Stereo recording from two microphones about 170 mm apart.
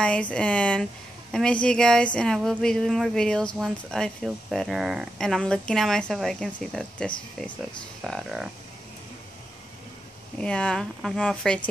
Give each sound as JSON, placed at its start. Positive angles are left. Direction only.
{"t": 0.0, "sound": "speech", "side_deg": 5}
{"t": 10.4, "sound": "speech", "side_deg": 5}